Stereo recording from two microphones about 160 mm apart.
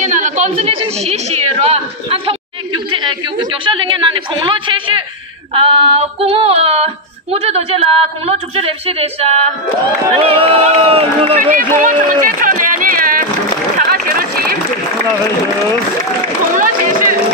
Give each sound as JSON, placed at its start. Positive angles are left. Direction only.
{"t": 0.0, "sound": "a sound", "side_deg": -50}
{"t": 0.7, "sound": "speech", "side_deg": -40}
{"t": 11.3, "sound": "run", "side_deg": -55}
{"t": 16.5, "sound": "run", "side_deg": -60}